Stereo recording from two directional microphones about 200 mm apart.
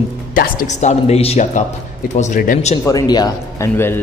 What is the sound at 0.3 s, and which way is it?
Speech, 45° left (ahead or behind).